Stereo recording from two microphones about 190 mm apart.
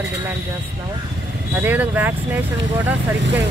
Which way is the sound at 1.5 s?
10° right (ahead or behind).